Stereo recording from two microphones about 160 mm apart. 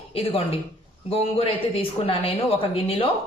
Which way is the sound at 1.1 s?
35° left (ahead or behind).